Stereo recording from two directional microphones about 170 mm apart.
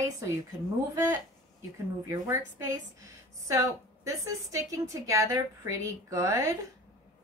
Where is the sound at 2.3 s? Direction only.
20° right (ahead or behind).